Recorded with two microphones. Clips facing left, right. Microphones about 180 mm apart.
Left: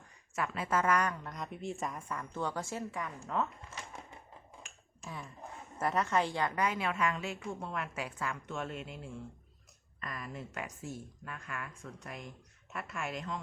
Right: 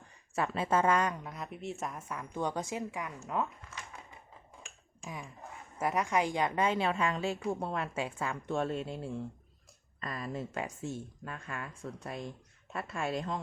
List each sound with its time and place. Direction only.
0.3 s a woman's voice: 30° right (ahead or behind)
1.3 s a woman's voice: 5° right (ahead or behind)
5.0 s a woman's voice: 15° right (ahead or behind); by 13.4 s 35° right (ahead or behind)